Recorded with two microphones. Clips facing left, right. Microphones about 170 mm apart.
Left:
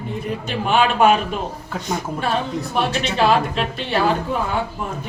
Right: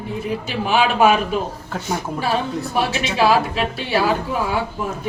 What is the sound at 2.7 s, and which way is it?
A woman's voice, 5° right (ahead or behind).